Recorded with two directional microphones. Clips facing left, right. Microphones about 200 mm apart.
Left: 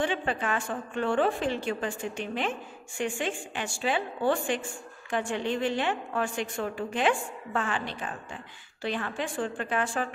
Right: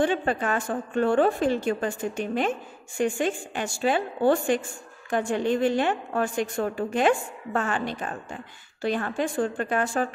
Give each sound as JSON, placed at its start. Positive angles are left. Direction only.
{"t": 0.0, "sound": "a woman's voice", "side_deg": -45}